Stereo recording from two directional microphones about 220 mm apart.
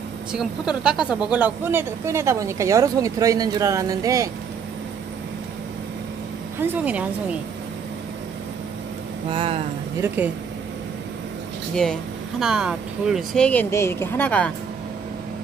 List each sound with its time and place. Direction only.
0.3 s speech: 5° right (ahead or behind)
6.6 s speech: 10° right (ahead or behind)
9.3 s speech: 25° right (ahead or behind)
9.9 s speech: 10° right (ahead or behind)
11.7 s speech: 5° left (ahead or behind)